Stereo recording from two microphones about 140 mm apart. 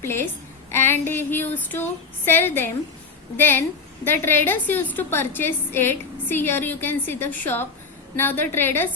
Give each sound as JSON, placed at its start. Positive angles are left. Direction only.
{"t": 0.0, "sound": "a woman's voice", "side_deg": 15}
{"t": 0.7, "sound": "child singing", "side_deg": 15}
{"t": 1.0, "sound": "a woman's voice", "side_deg": 15}